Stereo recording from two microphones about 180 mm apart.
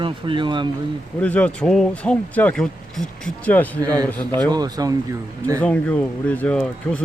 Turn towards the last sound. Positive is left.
turn(degrees=5)  # may be behind; listen again after turning